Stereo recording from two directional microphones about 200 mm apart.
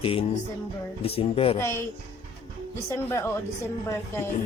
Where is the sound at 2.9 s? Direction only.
15° left (ahead or behind).